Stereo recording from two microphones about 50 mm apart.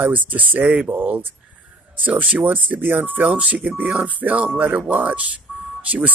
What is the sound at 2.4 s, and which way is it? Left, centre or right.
Speech, right.